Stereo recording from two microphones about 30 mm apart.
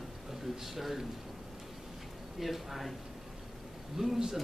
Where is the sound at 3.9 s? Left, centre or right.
Centre.